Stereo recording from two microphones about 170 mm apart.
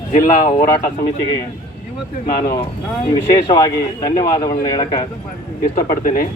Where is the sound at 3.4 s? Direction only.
20° left (ahead or behind).